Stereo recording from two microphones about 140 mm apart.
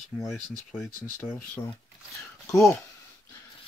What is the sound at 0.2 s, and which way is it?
Speech, centre (ahead or behind).